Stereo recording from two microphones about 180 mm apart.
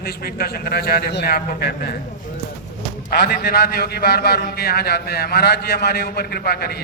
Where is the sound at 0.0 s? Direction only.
60° left (ahead or behind).